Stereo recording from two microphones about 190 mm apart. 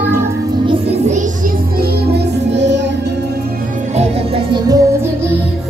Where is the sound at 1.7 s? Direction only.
60° right (ahead or behind).